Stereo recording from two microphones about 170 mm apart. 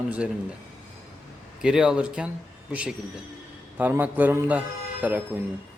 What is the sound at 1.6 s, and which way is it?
A man's voice, 5° right (ahead or behind).